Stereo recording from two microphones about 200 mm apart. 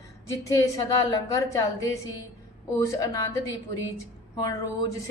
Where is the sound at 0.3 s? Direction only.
15° left (ahead or behind).